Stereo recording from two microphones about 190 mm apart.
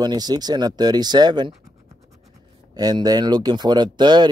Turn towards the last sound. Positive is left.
turn(degrees=-20)  # may be behind; listen again after turning